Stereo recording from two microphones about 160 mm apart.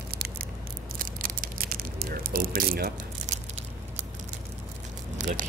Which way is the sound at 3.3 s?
45° right (ahead or behind).